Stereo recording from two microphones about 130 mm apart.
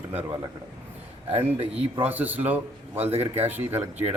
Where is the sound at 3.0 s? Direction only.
55° right (ahead or behind).